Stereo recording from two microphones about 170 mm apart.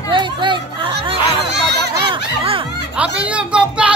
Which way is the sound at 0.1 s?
25° right (ahead or behind).